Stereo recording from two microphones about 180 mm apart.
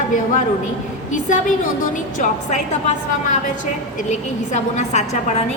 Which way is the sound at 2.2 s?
40° left (ahead or behind).